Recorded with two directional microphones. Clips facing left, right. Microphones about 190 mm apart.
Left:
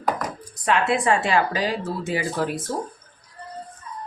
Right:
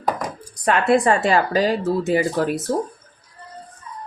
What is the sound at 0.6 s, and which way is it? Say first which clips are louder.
Speech: right 4 dB; 45° right (ahead or behind).